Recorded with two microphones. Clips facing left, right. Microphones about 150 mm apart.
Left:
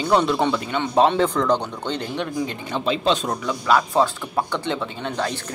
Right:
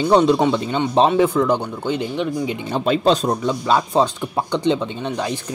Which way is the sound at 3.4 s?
25° right (ahead or behind).